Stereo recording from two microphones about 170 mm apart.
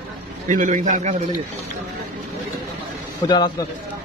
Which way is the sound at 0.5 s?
45° right (ahead or behind).